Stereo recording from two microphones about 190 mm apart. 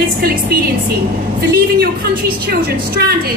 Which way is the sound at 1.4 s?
50° right (ahead or behind).